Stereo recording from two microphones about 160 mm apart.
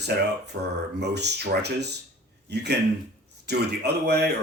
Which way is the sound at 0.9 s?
90° right.